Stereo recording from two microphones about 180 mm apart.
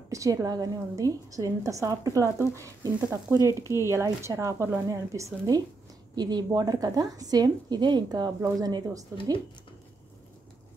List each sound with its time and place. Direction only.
0.1 s a woman's voice: 20° right (ahead or behind)